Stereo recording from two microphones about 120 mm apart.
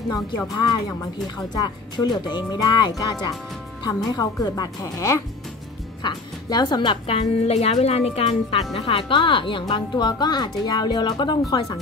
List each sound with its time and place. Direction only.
0.6 s a woman's voice: 35° left (ahead or behind)